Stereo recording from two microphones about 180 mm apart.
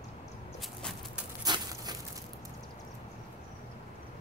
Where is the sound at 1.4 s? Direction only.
20° right (ahead or behind).